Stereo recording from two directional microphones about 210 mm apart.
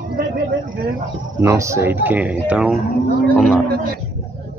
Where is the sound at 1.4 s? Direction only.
15° right (ahead or behind).